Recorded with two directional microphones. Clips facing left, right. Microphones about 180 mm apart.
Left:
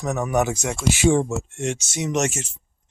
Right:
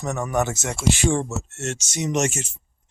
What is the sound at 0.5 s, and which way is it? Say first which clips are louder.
Speech: left 2 dB; 5° right (ahead or behind).